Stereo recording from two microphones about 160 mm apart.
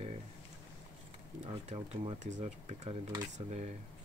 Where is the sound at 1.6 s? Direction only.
35° right (ahead or behind).